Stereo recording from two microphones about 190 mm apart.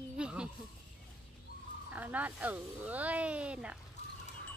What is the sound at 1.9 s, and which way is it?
Speech, 10° right (ahead or behind).